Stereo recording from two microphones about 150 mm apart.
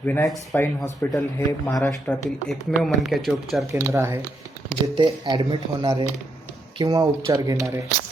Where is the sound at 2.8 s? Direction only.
Centre (ahead or behind).